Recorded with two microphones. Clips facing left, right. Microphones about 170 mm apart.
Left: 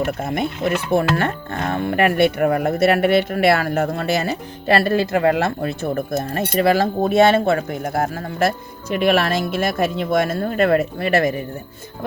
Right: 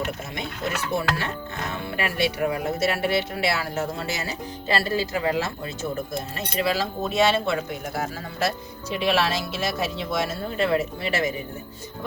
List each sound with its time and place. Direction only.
0.0 s speech: 55° left (ahead or behind)